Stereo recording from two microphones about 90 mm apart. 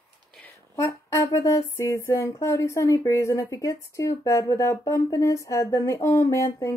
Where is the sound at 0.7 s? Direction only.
35° left (ahead or behind).